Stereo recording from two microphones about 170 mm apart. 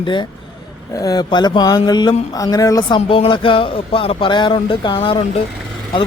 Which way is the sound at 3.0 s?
35° left (ahead or behind).